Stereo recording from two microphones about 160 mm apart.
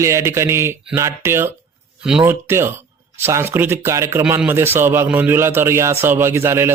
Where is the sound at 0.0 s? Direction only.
15° right (ahead or behind).